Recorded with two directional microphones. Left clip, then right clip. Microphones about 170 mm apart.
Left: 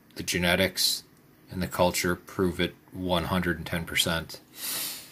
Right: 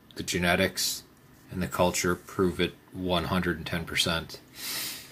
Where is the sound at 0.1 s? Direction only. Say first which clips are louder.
Left 1 dB; 15° left (ahead or behind).